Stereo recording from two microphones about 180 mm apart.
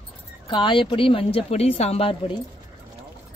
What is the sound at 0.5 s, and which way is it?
Speech, 25° left (ahead or behind).